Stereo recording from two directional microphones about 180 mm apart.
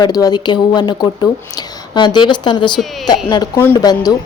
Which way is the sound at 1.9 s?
25° left (ahead or behind).